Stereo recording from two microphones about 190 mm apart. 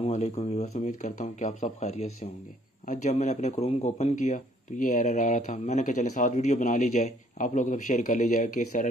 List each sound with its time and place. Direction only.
0.0 s speech: 35° left (ahead or behind)